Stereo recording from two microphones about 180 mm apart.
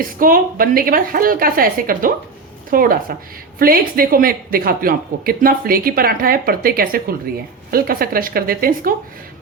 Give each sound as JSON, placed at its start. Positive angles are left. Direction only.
{"t": 0.0, "sound": "speech", "side_deg": -50}